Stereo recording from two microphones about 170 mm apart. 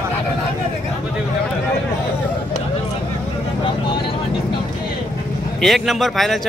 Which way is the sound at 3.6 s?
30° left (ahead or behind).